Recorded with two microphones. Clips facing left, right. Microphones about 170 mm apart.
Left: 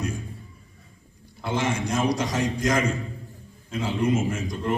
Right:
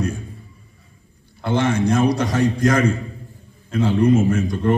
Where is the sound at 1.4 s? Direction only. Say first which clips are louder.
Right 7 dB; 60° right (ahead or behind).